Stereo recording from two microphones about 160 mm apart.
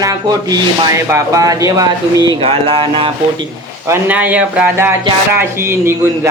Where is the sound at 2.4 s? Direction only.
35° right (ahead or behind).